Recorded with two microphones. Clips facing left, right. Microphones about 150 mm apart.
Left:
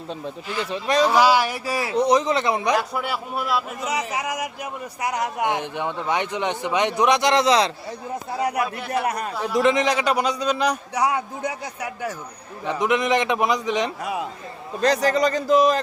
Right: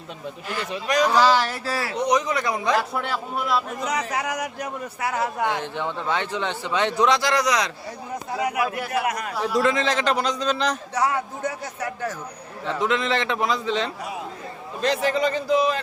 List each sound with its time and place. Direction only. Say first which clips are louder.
0.7 s speech: left 2 dB; 30° left (ahead or behind)
1.1 s a man's voice: left 1 dB; 10° left (ahead or behind)
2.0 s speech: left 4 dB; 30° left (ahead or behind)
2.7 s a man's voice: even; centre (ahead or behind); by 8.6 s 35° left (ahead or behind)
8.6 s a man's voice: right 2 dB; 5° right (ahead or behind)
9.0 s a man's voice: left 1 dB; 30° left (ahead or behind)
9.6 s a man's voice: left 3 dB; 20° left (ahead or behind)
14.8 s a man's voice: left 3 dB; 40° left (ahead or behind)